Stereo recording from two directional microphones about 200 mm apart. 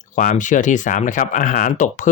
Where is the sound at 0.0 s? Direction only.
40° left (ahead or behind).